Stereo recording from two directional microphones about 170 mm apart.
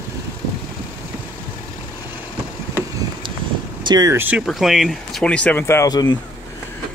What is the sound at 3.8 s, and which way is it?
Speech, 20° right (ahead or behind).